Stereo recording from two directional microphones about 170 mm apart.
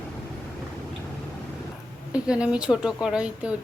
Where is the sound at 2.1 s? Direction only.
5° right (ahead or behind).